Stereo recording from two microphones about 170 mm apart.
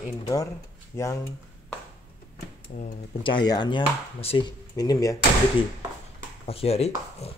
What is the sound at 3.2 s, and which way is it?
Speech, 25° left (ahead or behind).